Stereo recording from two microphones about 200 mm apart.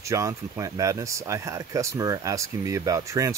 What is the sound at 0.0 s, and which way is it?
Speech, 15° right (ahead or behind).